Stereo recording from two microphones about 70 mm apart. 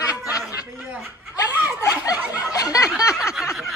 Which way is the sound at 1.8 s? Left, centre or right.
Left.